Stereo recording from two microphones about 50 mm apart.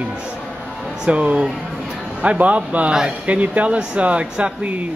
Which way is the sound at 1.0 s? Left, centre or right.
Right.